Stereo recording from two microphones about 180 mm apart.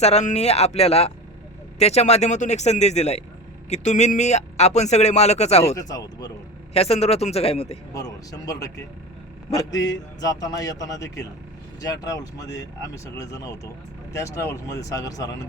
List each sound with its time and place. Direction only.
0.0 s speech: 40° left (ahead or behind)
5.9 s a man's voice: 20° left (ahead or behind)
6.7 s speech: 35° left (ahead or behind)
7.9 s a man's voice: 20° left (ahead or behind)
9.6 s a man's voice: 20° left (ahead or behind)